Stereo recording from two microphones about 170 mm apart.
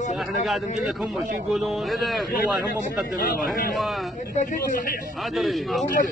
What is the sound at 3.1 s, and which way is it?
Speech, 55° left (ahead or behind).